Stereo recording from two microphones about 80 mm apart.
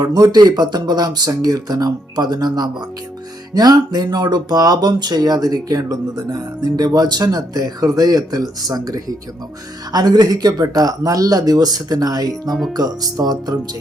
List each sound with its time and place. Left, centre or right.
0.0 s speech: right